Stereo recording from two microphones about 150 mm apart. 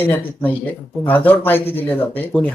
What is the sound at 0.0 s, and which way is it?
Speech, 15° left (ahead or behind).